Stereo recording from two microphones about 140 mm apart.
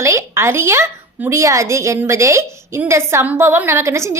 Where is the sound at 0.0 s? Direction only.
20° right (ahead or behind).